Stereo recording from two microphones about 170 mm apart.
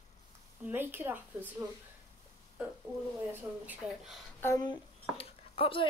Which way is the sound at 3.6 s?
10° right (ahead or behind).